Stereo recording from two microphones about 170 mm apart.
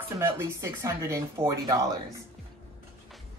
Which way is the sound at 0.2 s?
15° right (ahead or behind).